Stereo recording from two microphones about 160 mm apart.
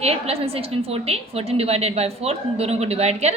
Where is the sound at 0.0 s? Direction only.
40° right (ahead or behind).